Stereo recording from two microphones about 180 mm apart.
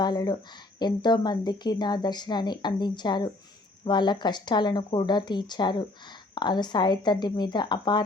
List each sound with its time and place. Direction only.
0.0 s a woman's voice: 25° left (ahead or behind)